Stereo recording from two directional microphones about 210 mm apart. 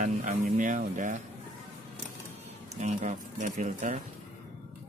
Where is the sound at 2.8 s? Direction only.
35° right (ahead or behind).